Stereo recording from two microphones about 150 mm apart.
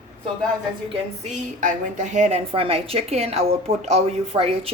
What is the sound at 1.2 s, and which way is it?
A woman's voice, 55° right (ahead or behind).